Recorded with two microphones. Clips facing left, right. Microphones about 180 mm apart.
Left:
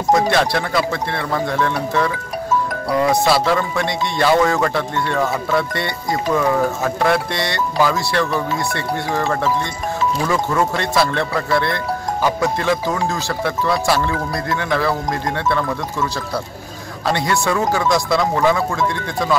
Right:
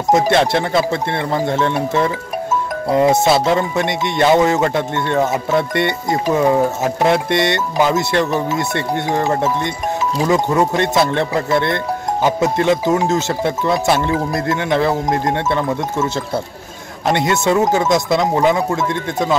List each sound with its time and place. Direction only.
0.1 s speech: 20° right (ahead or behind)
17.1 s speech: 20° right (ahead or behind)